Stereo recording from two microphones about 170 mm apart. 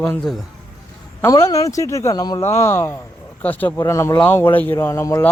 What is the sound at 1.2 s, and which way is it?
A man's voice, 20° left (ahead or behind).